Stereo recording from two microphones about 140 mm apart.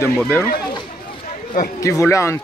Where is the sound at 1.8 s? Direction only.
20° left (ahead or behind).